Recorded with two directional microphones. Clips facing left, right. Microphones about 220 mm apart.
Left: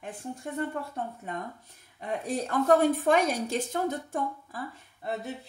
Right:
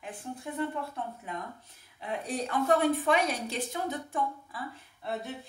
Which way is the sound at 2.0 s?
45° left (ahead or behind).